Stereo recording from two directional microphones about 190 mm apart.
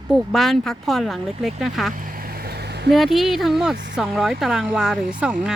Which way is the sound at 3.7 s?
70° right (ahead or behind).